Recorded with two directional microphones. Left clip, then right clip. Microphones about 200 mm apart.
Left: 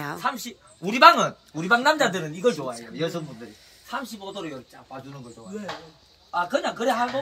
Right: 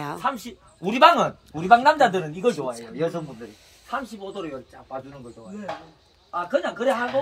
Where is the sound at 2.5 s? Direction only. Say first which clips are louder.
Right 2 dB; 25° right (ahead or behind).